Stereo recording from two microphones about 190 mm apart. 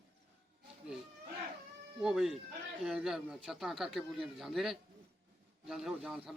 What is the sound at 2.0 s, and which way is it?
A man's voice, centre (ahead or behind).